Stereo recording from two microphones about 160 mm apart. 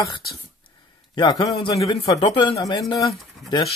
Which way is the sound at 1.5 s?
35° left (ahead or behind).